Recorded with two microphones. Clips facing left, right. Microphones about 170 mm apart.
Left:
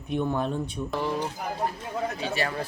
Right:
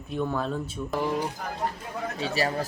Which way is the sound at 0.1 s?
20° left (ahead or behind).